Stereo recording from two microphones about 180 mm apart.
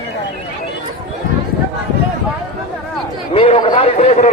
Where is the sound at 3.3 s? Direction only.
30° left (ahead or behind).